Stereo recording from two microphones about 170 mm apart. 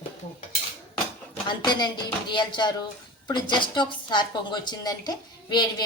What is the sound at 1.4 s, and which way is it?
A woman's voice, 25° left (ahead or behind).